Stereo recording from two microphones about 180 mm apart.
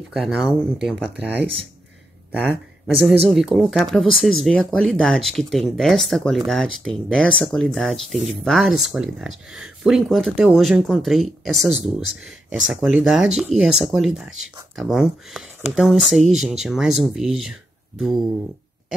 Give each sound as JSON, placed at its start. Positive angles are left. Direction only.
{"t": 0.1, "sound": "speech", "side_deg": 0}
{"t": 12.0, "sound": "speech", "side_deg": -90}
{"t": 12.9, "sound": "speech", "side_deg": -5}